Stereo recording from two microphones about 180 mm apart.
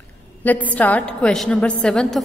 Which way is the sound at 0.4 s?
10° left (ahead or behind).